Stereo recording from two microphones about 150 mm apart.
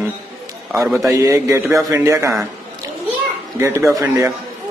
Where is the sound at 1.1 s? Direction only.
20° right (ahead or behind).